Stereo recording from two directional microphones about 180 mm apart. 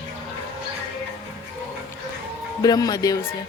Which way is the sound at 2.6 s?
20° left (ahead or behind).